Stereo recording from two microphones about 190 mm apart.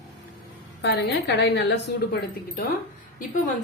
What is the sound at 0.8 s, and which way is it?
A woman's voice, 60° left (ahead or behind).